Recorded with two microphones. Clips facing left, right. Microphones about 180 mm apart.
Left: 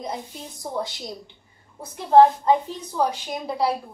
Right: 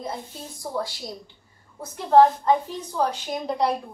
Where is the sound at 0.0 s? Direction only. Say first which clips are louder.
Left 1 dB; 20° left (ahead or behind).